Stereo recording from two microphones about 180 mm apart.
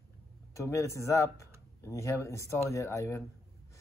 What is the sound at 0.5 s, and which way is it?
Speech, 15° left (ahead or behind).